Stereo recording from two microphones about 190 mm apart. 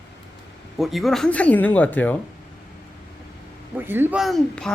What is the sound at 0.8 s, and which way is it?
Speech, centre (ahead or behind).